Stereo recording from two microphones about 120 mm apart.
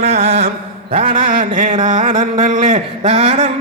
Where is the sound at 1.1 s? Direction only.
90° right.